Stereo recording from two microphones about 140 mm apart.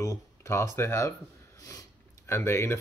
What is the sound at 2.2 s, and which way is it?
Speech, 20° left (ahead or behind).